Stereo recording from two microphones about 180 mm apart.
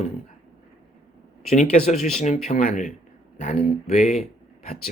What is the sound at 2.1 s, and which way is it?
Speech, 40° left (ahead or behind).